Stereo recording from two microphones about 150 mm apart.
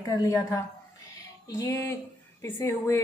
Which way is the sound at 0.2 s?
20° left (ahead or behind).